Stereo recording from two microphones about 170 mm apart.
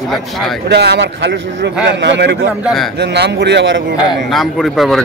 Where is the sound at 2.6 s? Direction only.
Centre (ahead or behind).